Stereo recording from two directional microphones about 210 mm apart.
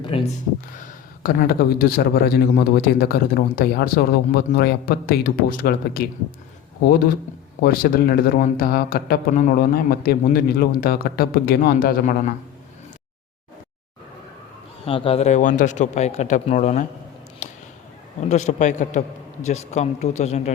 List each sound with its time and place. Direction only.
0.0 s speech: 25° left (ahead or behind)
1.2 s a man's voice: 45° left (ahead or behind)
7.6 s a man's voice: 45° left (ahead or behind)
14.8 s a man's voice: 25° left (ahead or behind)
17.4 s a sound: 35° left (ahead or behind)
18.3 s a man's voice: 35° left (ahead or behind)